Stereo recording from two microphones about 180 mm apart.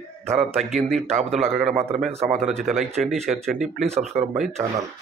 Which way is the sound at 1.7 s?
35° right (ahead or behind).